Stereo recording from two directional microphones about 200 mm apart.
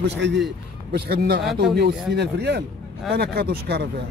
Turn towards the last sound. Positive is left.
turn(degrees=-55)  # may be behind; listen again after turning